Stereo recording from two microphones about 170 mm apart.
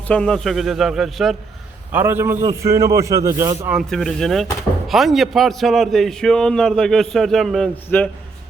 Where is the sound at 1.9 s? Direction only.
10° right (ahead or behind).